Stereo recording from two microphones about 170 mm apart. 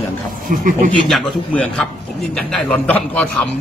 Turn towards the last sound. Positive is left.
turn(degrees=10)  # may be behind; listen again after turning